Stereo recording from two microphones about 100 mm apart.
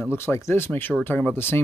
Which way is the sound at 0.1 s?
25° left (ahead or behind).